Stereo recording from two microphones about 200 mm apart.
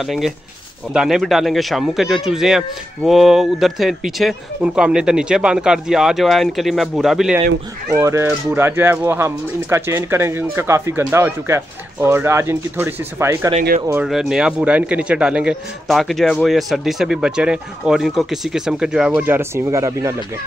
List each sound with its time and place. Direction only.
0.0 s a man's voice: centre (ahead or behind)
7.9 s speech: 15° right (ahead or behind)
13.6 s speech: 40° right (ahead or behind)
14.0 s a man's voice: 5° right (ahead or behind)